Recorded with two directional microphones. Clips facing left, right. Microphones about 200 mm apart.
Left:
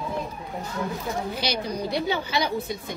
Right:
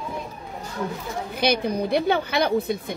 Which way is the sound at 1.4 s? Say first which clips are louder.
Right 6 dB; 55° right (ahead or behind).